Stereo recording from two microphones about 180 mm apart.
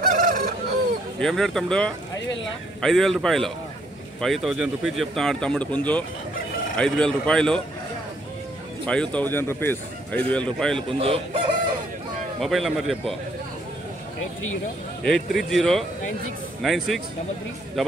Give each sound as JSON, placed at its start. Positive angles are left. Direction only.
{"t": 0.0, "sound": "fowl", "side_deg": -50}
{"t": 1.2, "sound": "speech", "side_deg": 0}
{"t": 8.8, "sound": "speech", "side_deg": 5}
{"t": 11.0, "sound": "speech", "side_deg": -30}
{"t": 12.4, "sound": "speech", "side_deg": 0}
{"t": 15.0, "sound": "speech", "side_deg": 0}